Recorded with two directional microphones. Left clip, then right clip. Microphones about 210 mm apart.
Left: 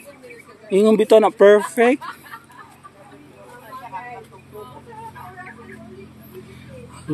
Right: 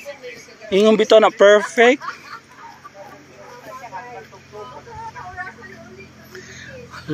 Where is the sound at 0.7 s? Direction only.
5° left (ahead or behind).